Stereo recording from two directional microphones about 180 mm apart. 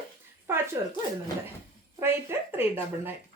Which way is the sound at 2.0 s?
10° right (ahead or behind).